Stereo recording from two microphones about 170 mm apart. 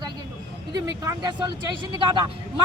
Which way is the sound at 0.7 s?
25° right (ahead or behind).